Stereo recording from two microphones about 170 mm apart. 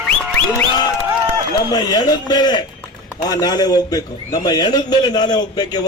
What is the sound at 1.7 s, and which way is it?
A man's voice, 25° left (ahead or behind).